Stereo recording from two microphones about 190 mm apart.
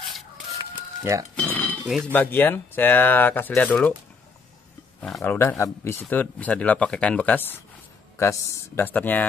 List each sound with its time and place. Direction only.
0.5 s chicken: 15° right (ahead or behind)
1.3 s cutlery: 10° left (ahead or behind)
1.9 s speech: 5° right (ahead or behind)
2.1 s speech: 10° left (ahead or behind)
5.0 s speech: 5° left (ahead or behind)